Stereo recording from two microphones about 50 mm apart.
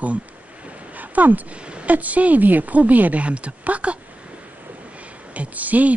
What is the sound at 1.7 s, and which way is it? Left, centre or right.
A woman's voice, right.